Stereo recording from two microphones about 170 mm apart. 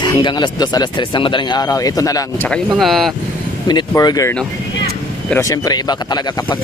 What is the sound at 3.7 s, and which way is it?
Speech, 25° left (ahead or behind).